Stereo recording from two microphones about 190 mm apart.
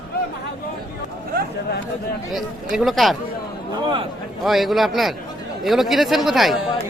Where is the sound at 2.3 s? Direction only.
Centre (ahead or behind).